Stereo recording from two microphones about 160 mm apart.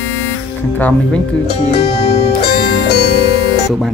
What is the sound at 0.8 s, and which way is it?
Speech, 10° left (ahead or behind).